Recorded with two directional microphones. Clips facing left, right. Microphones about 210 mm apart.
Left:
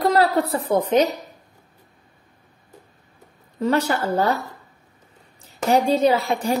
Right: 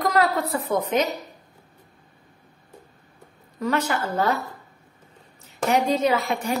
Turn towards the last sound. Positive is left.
turn(degrees=30)  # may be behind; listen again after turning